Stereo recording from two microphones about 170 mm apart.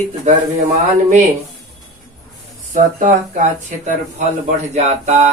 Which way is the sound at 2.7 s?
45° right (ahead or behind).